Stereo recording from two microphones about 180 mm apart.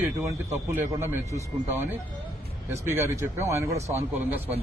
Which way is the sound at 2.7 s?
15° right (ahead or behind).